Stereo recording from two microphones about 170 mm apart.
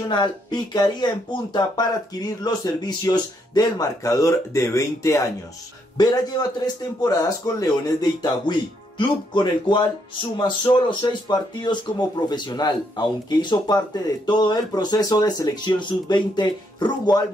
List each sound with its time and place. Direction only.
0.1 s speech: 25° left (ahead or behind)